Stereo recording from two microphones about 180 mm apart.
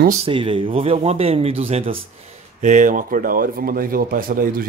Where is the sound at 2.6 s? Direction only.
45° right (ahead or behind).